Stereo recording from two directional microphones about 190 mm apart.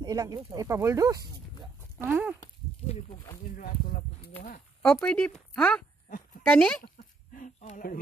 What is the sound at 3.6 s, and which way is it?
Speech, 50° left (ahead or behind).